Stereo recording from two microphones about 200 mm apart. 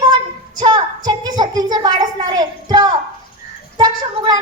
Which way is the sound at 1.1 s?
20° right (ahead or behind).